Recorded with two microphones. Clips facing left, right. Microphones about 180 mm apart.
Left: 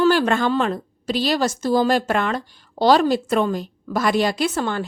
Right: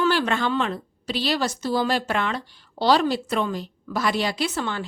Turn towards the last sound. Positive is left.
turn(degrees=45)  # may be behind; listen again after turning